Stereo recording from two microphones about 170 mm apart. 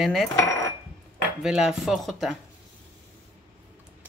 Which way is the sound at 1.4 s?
5° right (ahead or behind).